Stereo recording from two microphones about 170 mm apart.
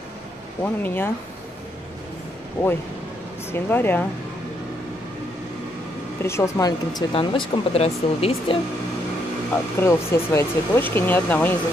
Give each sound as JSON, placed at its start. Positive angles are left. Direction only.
{"t": 0.6, "sound": "speech", "side_deg": 15}
{"t": 2.6, "sound": "speech", "side_deg": 15}
{"t": 6.2, "sound": "speech", "side_deg": 15}
{"t": 9.8, "sound": "speech", "side_deg": 15}